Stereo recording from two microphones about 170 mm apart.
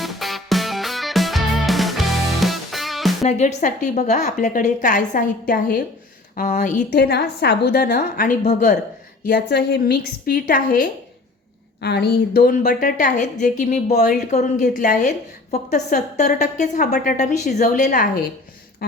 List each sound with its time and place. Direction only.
0.0 s music: centre (ahead or behind)
3.2 s a woman's voice: 40° left (ahead or behind)
6.9 s a woman's voice: 75° left (ahead or behind); by 8.8 s 50° left (ahead or behind)
9.3 s a woman's voice: 75° left (ahead or behind); by 10.8 s 55° left (ahead or behind)
11.8 s a woman's voice: 75° left (ahead or behind); by 16.8 s 45° left (ahead or behind)
16.8 s a woman's voice: 60° left (ahead or behind)
18.8 s a sound: 65° left (ahead or behind)